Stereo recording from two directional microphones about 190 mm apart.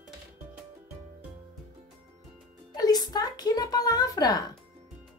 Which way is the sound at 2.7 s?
20° left (ahead or behind).